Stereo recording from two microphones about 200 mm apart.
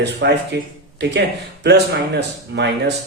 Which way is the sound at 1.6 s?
60° right (ahead or behind).